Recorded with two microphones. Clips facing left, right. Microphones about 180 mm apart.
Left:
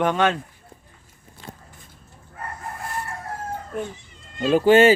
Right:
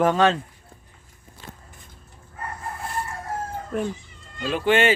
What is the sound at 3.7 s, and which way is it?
Speech, 70° right (ahead or behind).